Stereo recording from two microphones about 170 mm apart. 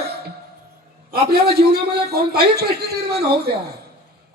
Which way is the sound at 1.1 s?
60° right (ahead or behind).